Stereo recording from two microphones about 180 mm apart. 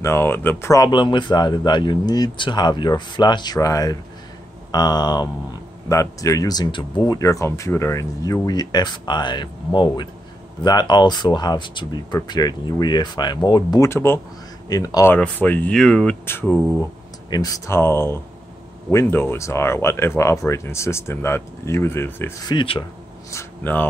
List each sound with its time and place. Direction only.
0.0 s speech: 15° left (ahead or behind)
15.1 s speech: 10° left (ahead or behind)
22.5 s speech: 25° left (ahead or behind)
23.3 s speech: 10° left (ahead or behind)